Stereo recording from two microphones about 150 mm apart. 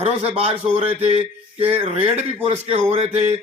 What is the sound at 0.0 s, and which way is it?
A man's voice, 40° right (ahead or behind).